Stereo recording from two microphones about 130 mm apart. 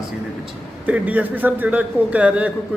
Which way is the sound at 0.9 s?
10° right (ahead or behind).